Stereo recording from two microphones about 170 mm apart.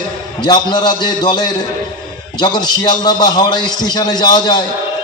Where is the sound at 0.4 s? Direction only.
25° left (ahead or behind).